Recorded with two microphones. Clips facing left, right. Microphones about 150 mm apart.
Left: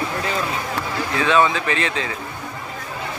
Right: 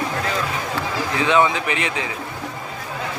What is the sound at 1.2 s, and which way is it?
Speech, 20° right (ahead or behind).